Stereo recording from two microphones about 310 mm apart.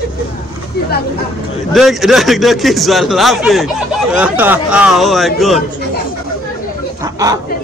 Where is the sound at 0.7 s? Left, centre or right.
Left.